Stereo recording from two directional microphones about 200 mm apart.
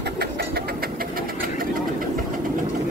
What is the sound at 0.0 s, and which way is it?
Vehicle, 55° right (ahead or behind).